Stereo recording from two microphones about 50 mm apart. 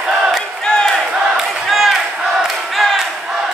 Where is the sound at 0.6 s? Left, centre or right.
Centre.